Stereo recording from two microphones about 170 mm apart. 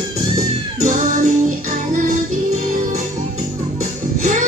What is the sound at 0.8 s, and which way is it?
Music, 50° right (ahead or behind).